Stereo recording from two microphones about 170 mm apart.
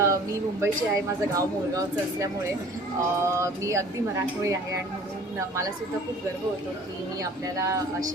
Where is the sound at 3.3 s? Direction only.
15° right (ahead or behind).